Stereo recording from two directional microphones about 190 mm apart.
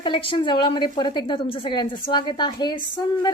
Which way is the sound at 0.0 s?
25° left (ahead or behind).